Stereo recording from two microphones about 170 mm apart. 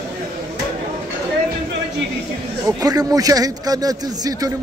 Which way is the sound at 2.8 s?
20° right (ahead or behind).